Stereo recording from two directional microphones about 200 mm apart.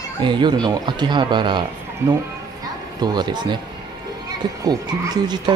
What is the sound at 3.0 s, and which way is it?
Speech, 20° right (ahead or behind).